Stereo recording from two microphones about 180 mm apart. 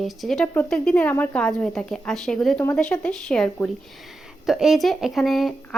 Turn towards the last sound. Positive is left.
turn(degrees=0)  # may be behind; listen again after turning